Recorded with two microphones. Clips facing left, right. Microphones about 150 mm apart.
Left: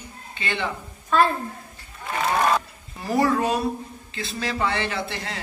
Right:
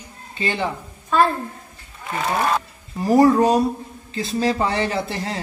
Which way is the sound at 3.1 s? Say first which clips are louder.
Right 7 dB; 35° right (ahead or behind).